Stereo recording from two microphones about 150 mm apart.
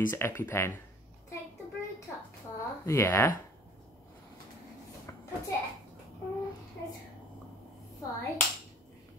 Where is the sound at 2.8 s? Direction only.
20° left (ahead or behind).